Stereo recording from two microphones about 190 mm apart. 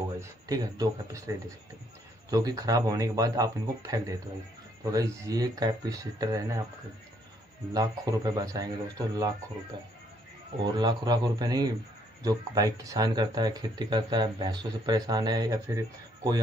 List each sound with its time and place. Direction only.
0.2 s speech: 20° right (ahead or behind)
2.3 s speech: 20° right (ahead or behind)
7.7 s speech: 20° right (ahead or behind)
10.6 s speech: 20° right (ahead or behind)